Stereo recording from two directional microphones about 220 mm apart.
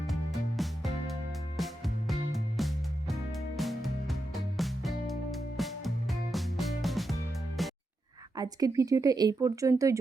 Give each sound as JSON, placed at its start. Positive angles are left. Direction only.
{"t": 0.1, "sound": "music", "side_deg": 0}
{"t": 8.4, "sound": "speech", "side_deg": -15}